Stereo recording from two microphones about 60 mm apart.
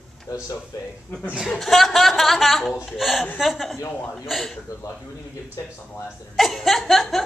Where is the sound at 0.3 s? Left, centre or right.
Left.